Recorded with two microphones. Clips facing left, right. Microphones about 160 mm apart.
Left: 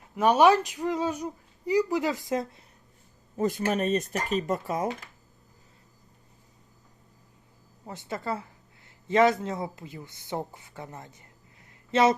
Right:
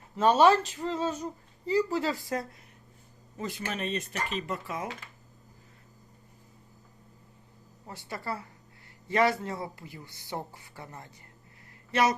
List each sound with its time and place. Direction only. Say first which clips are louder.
0.2 s speech: left 1 dB; 15° left (ahead or behind)
3.3 s speech: left 9 dB; 45° left (ahead or behind)
7.9 s speech: left 4 dB; 20° left (ahead or behind)
11.7 s a sound: left 4 dB; 20° left (ahead or behind)